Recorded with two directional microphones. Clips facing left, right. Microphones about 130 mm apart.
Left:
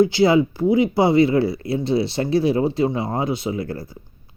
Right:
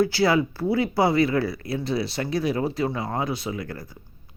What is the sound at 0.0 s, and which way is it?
Speech, 20° left (ahead or behind).